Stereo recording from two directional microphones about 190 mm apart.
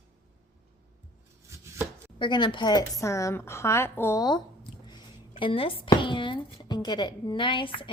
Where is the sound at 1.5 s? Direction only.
15° right (ahead or behind).